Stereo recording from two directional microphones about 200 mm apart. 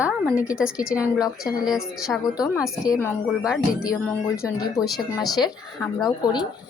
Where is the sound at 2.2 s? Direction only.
20° left (ahead or behind).